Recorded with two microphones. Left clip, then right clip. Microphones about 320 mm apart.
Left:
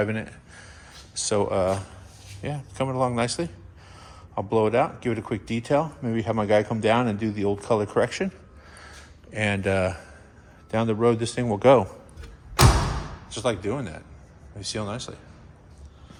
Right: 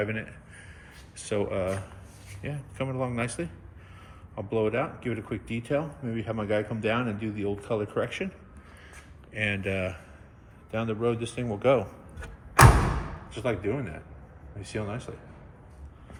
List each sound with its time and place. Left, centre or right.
0.1 s a man's voice: centre
9.5 s speech: centre
11.3 s speech: left
11.6 s speech: left
13.3 s a man's voice: centre